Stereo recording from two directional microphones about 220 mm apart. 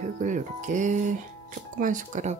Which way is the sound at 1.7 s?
35° right (ahead or behind).